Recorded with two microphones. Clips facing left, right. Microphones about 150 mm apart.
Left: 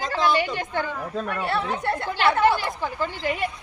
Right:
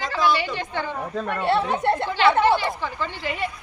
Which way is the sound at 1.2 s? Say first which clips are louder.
Right 5 dB; 25° right (ahead or behind).